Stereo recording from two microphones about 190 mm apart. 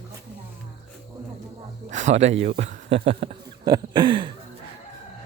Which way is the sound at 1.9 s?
40° right (ahead or behind).